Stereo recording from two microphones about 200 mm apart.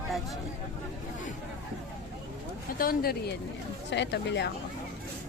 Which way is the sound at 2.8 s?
45° left (ahead or behind).